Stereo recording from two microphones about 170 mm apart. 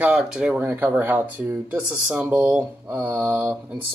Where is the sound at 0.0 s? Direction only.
5° right (ahead or behind).